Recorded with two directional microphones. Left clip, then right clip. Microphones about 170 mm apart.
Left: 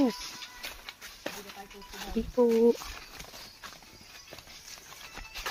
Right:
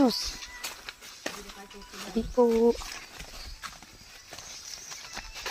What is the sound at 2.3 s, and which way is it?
Speech, centre (ahead or behind).